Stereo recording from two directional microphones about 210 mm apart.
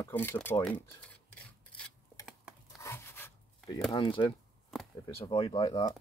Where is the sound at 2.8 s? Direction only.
10° left (ahead or behind).